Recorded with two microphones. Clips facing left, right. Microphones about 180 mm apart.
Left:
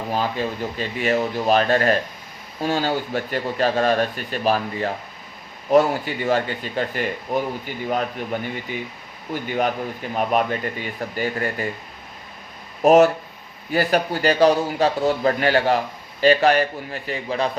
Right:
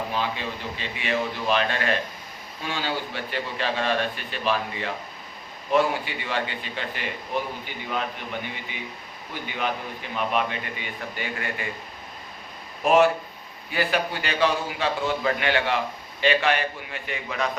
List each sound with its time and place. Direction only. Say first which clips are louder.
0.1 s speech: left 5 dB; 40° left (ahead or behind)
12.8 s speech: left 5 dB; 40° left (ahead or behind)